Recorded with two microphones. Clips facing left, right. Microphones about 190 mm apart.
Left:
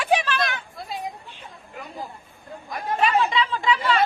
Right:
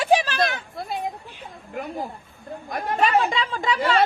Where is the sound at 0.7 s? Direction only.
55° right (ahead or behind).